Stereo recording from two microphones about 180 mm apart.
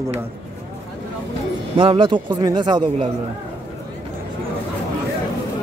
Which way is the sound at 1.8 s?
30° right (ahead or behind).